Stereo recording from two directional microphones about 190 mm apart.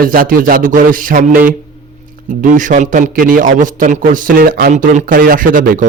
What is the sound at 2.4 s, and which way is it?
A man's voice, 45° right (ahead or behind).